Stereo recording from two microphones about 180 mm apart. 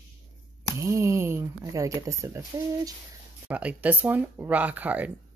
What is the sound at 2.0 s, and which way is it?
Speech, 15° right (ahead or behind).